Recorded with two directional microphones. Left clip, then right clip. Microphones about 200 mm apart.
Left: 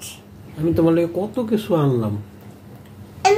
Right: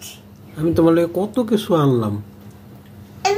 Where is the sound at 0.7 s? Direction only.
25° right (ahead or behind).